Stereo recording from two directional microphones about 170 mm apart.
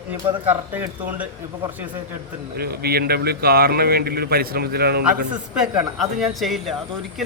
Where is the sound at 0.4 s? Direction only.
10° right (ahead or behind).